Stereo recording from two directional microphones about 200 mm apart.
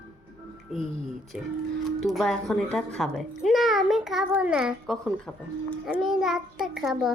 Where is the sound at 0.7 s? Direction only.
Centre (ahead or behind).